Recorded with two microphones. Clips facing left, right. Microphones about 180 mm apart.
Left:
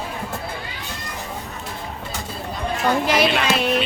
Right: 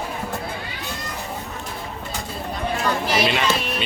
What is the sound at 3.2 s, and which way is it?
Speech, centre (ahead or behind).